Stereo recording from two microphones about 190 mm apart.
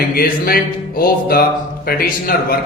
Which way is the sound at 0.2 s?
50° left (ahead or behind).